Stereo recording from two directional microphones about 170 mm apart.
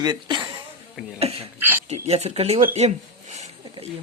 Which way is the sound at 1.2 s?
40° right (ahead or behind).